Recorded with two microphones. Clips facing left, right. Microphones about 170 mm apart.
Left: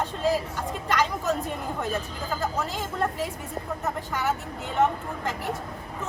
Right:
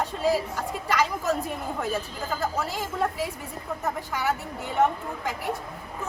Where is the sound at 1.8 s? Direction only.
5° right (ahead or behind).